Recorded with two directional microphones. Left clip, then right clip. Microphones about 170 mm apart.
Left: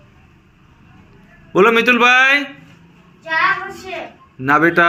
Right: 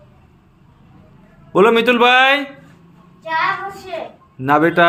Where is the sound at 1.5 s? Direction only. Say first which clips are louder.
Even; 25° right (ahead or behind).